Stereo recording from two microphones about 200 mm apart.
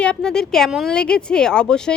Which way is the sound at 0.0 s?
5° left (ahead or behind).